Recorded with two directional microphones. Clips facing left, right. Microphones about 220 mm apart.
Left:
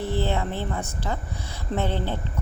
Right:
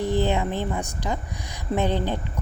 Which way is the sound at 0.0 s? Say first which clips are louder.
Right 3 dB; 15° right (ahead or behind).